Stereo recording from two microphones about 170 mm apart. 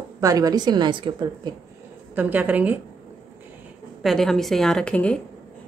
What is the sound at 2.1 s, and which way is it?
Speech, 10° right (ahead or behind).